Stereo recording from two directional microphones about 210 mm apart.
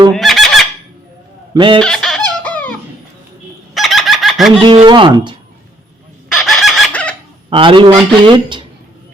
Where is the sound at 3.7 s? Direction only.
Centre (ahead or behind).